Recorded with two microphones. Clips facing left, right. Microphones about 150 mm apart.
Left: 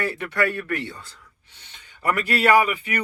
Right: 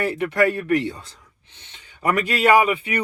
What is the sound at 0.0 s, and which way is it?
Speech, 20° right (ahead or behind).